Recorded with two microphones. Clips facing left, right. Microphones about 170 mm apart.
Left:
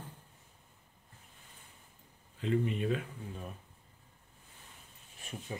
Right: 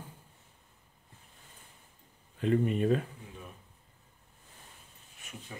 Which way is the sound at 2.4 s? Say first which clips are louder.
Right 4 dB; 50° right (ahead or behind).